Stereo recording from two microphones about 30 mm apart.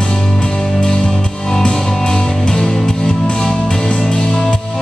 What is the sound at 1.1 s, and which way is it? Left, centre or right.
Music, centre.